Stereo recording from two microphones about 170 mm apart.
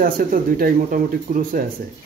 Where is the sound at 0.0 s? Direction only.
55° right (ahead or behind).